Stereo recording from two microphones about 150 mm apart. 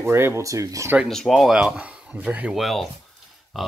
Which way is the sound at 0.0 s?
15° right (ahead or behind).